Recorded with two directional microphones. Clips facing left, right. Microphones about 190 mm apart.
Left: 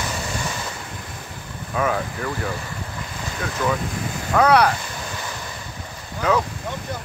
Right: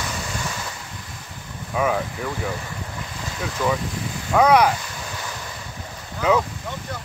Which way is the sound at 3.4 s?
5° right (ahead or behind).